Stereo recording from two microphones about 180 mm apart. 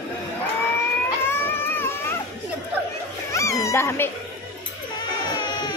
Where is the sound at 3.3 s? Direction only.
15° left (ahead or behind).